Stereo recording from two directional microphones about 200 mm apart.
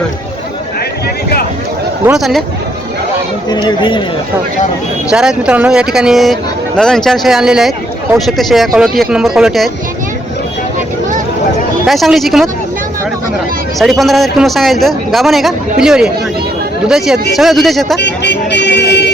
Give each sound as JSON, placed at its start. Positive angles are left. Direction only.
{"t": 2.1, "sound": "a man's voice", "side_deg": 0}
{"t": 3.5, "sound": "speech", "side_deg": 25}
{"t": 5.0, "sound": "a man's voice", "side_deg": -5}
{"t": 11.9, "sound": "a man's voice", "side_deg": 0}
{"t": 13.7, "sound": "a man's voice", "side_deg": 0}
{"t": 17.9, "sound": "speech", "side_deg": 60}